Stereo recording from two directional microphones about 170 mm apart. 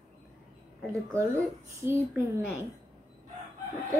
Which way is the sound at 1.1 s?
15° right (ahead or behind).